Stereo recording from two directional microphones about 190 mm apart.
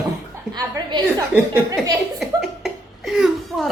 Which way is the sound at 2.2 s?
Centre (ahead or behind).